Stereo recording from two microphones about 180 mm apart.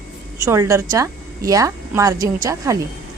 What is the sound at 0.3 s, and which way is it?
A woman's voice, 15° right (ahead or behind).